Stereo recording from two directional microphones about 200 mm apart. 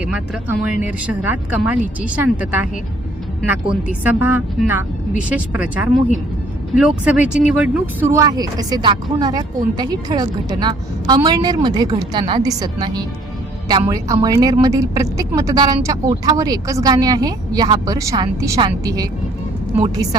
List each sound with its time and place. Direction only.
0.0 s speech: 5° right (ahead or behind)
4.0 s a woman's voice: 10° right (ahead or behind)